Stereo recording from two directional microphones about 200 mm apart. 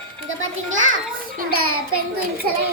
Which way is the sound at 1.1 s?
45° right (ahead or behind).